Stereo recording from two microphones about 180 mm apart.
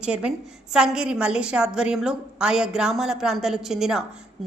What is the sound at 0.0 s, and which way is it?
A woman's voice, 5° right (ahead or behind).